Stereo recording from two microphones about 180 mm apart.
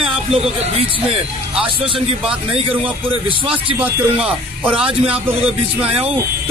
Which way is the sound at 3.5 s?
10° right (ahead or behind).